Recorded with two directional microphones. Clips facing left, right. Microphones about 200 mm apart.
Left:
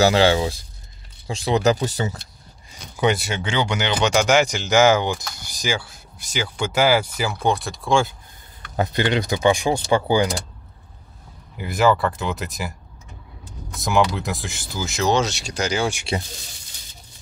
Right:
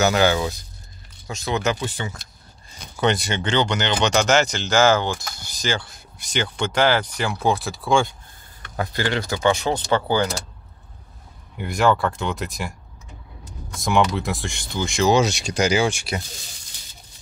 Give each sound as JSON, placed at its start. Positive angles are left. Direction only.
{"t": 0.0, "sound": "speech", "side_deg": 30}
{"t": 3.0, "sound": "speech", "side_deg": 5}
{"t": 8.7, "sound": "speech", "side_deg": 20}
{"t": 11.5, "sound": "speech", "side_deg": 0}
{"t": 13.7, "sound": "speech", "side_deg": 0}
{"t": 15.1, "sound": "speech", "side_deg": -15}
{"t": 16.1, "sound": "speech", "side_deg": 30}